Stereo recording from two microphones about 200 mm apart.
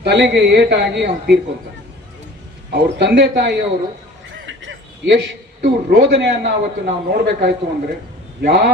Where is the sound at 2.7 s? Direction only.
55° right (ahead or behind).